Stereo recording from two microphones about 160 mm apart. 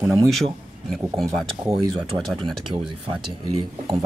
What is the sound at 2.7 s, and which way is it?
Speech, 30° right (ahead or behind).